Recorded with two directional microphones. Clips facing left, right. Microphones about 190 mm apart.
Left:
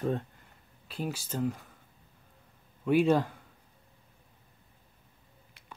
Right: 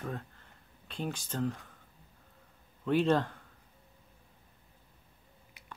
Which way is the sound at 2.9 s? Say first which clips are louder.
Left 3 dB; 10° left (ahead or behind).